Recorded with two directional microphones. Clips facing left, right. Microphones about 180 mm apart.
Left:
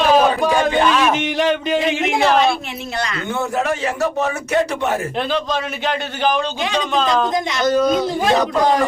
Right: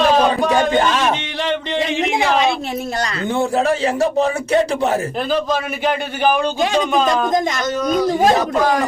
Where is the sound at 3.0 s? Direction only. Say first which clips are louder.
Right 2 dB; 35° right (ahead or behind).